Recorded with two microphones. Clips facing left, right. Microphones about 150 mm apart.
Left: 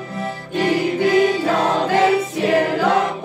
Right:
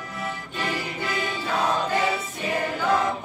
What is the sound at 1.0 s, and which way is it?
Music, 60° left (ahead or behind).